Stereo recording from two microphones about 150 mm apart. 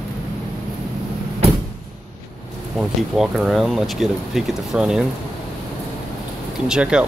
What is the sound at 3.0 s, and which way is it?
Speech, centre (ahead or behind).